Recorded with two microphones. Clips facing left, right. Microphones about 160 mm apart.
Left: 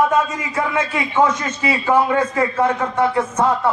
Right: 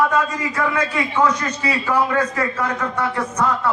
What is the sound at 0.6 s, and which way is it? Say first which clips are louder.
A man's voice: left 1 dB; 20° left (ahead or behind).